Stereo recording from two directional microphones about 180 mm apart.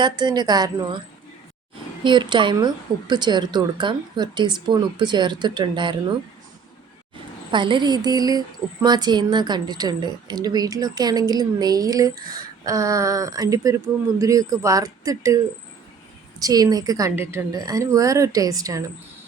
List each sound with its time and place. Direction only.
0.0 s speech: 25° right (ahead or behind)
2.0 s speech: 25° right (ahead or behind)
7.5 s speech: 25° right (ahead or behind)
16.4 s speech: 20° right (ahead or behind)